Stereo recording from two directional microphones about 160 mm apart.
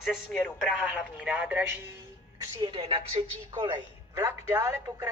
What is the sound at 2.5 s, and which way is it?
A woman's voice, 30° right (ahead or behind).